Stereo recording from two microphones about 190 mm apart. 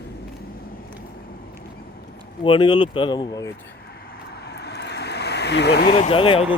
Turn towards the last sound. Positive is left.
turn(degrees=30)  # may be behind; listen again after turning